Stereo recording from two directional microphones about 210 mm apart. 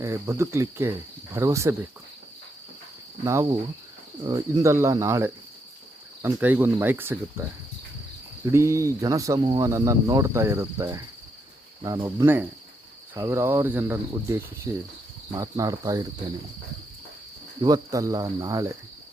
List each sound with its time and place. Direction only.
0.0 s speech: 15° right (ahead or behind)
4.3 s speech: 15° right (ahead or behind)
8.4 s speech: 15° right (ahead or behind)
17.6 s speech: 15° right (ahead or behind)